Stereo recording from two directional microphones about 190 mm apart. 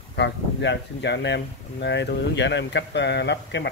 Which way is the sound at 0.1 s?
65° left (ahead or behind).